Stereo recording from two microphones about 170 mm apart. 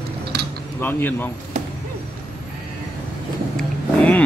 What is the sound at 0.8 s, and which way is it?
Speech, 10° left (ahead or behind).